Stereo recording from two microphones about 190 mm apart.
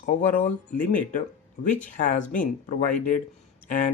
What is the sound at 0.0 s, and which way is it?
Speech, 45° left (ahead or behind).